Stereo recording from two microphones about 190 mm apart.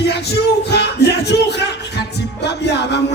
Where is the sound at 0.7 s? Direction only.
60° left (ahead or behind).